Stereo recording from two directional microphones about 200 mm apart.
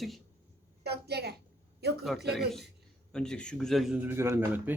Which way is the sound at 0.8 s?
55° right (ahead or behind).